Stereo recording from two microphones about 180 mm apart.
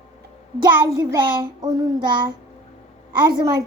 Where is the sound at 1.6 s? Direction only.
20° right (ahead or behind).